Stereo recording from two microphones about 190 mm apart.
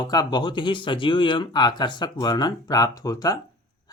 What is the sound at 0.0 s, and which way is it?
Speech, 20° left (ahead or behind).